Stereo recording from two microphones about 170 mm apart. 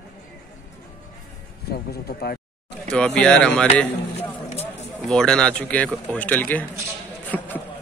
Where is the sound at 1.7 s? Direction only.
65° left (ahead or behind).